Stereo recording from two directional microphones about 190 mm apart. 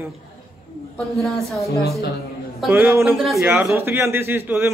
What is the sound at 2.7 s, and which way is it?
Speech, 15° right (ahead or behind).